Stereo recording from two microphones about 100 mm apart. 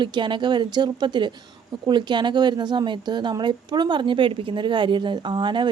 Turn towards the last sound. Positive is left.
turn(degrees=-50)  # may be behind; listen again after turning